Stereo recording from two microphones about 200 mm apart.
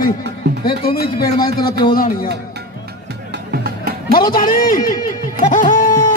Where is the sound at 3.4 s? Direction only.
50° right (ahead or behind).